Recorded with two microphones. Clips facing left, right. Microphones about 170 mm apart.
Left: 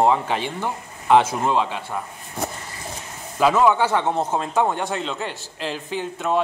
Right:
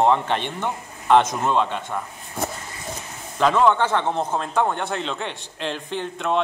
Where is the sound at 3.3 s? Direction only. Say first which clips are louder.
Left 1 dB; 5° left (ahead or behind).